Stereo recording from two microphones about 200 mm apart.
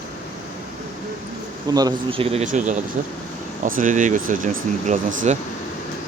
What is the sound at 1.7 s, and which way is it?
Speech, 20° right (ahead or behind).